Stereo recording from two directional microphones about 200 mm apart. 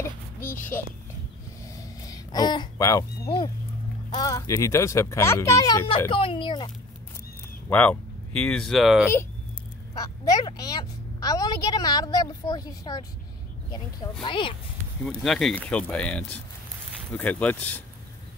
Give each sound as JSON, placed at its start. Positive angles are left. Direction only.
{"t": 0.4, "sound": "speech", "side_deg": 10}
{"t": 1.8, "sound": "a sound", "side_deg": 20}
{"t": 3.3, "sound": "a woman's voice", "side_deg": 25}
{"t": 5.9, "sound": "a woman's voice", "side_deg": 25}
{"t": 7.7, "sound": "speech", "side_deg": 5}
{"t": 9.9, "sound": "a woman's voice", "side_deg": 20}
{"t": 14.2, "sound": "a woman's voice", "side_deg": 25}
{"t": 15.0, "sound": "speech", "side_deg": 5}